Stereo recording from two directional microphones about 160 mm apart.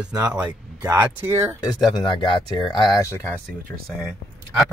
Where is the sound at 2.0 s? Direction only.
30° left (ahead or behind).